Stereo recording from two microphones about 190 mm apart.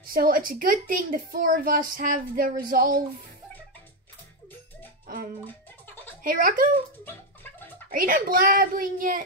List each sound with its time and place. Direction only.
0.0 s speech: 50° right (ahead or behind)
5.0 s music: 50° right (ahead or behind)
6.2 s speech: 45° right (ahead or behind)
7.9 s speech: 45° right (ahead or behind)